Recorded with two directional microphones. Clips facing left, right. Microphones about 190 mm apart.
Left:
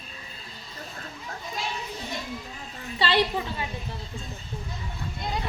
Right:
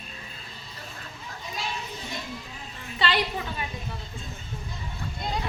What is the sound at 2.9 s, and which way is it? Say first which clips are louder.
Speech: left 3 dB; 25° left (ahead or behind).